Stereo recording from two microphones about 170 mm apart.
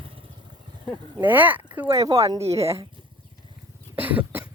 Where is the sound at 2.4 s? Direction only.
35° right (ahead or behind).